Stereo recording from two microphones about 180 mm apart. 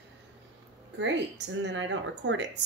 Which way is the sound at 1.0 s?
80° right.